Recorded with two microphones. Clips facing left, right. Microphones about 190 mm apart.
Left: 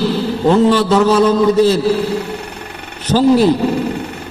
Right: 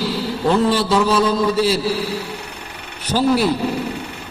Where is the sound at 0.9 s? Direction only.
45° left (ahead or behind).